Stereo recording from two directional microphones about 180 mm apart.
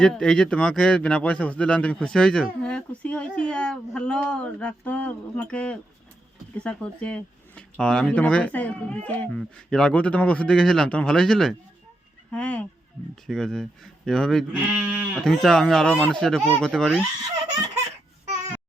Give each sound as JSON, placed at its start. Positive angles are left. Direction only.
{"t": 0.0, "sound": "speech", "side_deg": 5}